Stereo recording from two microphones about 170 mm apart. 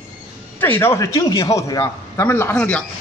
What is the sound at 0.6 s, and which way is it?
A man's voice, 15° left (ahead or behind).